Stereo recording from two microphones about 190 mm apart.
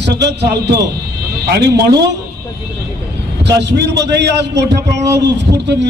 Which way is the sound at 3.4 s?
65° right (ahead or behind).